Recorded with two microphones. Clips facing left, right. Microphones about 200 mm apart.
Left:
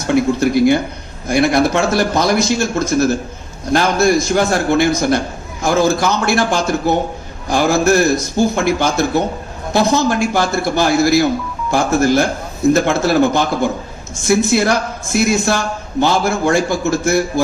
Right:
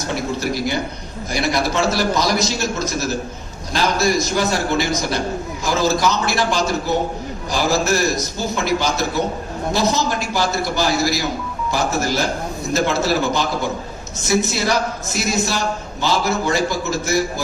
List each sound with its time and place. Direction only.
0.0 s a man's voice: 55° left (ahead or behind)